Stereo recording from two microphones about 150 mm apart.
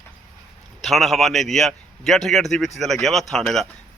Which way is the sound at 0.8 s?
Centre (ahead or behind).